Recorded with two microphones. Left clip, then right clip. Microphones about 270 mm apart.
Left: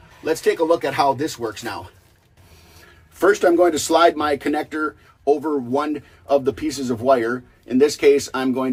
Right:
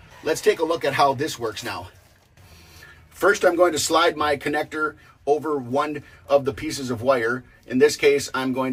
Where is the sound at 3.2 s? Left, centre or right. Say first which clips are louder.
Left 2 dB; left.